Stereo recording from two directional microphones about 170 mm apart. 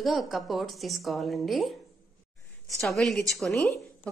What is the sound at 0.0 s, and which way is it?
A woman's voice, centre (ahead or behind).